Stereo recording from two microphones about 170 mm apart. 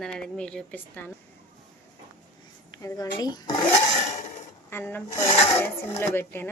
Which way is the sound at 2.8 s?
20° left (ahead or behind).